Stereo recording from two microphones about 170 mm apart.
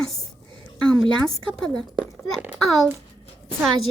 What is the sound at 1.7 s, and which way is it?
Speech, 5° left (ahead or behind).